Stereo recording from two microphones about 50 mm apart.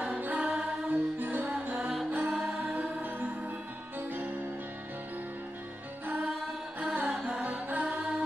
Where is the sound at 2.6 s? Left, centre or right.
Right.